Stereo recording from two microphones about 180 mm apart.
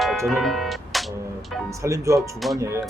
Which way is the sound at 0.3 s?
Centre (ahead or behind).